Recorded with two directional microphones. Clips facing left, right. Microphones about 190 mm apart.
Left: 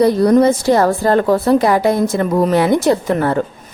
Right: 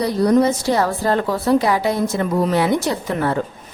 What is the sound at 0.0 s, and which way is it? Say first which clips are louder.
A woman's voice: left 5 dB; 50° left (ahead or behind).